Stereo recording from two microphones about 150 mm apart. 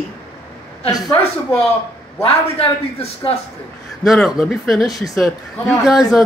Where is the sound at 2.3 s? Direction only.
40° left (ahead or behind).